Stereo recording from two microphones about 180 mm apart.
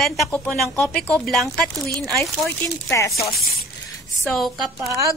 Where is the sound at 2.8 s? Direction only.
15° left (ahead or behind).